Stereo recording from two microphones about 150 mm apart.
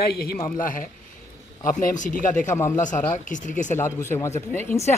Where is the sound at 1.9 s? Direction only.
60° left (ahead or behind).